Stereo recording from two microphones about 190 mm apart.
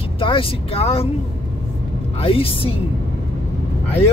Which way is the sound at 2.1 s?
30° left (ahead or behind).